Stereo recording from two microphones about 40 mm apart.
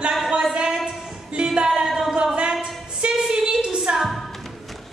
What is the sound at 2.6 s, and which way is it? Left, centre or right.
A capella, right.